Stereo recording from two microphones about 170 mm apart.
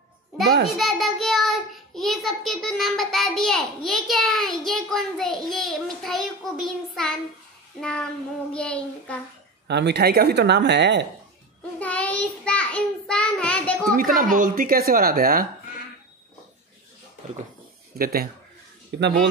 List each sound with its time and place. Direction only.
0.7 s child singing: centre (ahead or behind)
7.8 s child singing: 5° left (ahead or behind)
8.5 s a child's voice: 5° left (ahead or behind)
9.7 s speech: 85° right
11.8 s child singing: 10° left (ahead or behind)
13.9 s speech: 55° right (ahead or behind)
17.9 s speech: 60° right (ahead or behind)
18.9 s speech: 85° right